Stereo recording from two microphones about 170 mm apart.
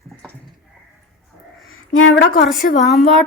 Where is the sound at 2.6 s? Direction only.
65° left (ahead or behind).